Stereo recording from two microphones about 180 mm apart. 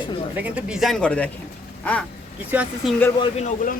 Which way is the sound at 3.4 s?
45° left (ahead or behind).